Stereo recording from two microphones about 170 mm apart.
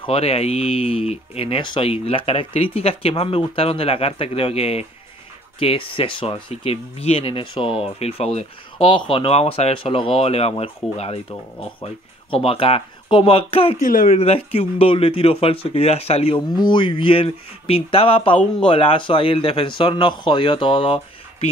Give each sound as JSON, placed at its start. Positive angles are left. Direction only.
{"t": 0.0, "sound": "speech", "side_deg": 35}
{"t": 13.7, "sound": "speech", "side_deg": 50}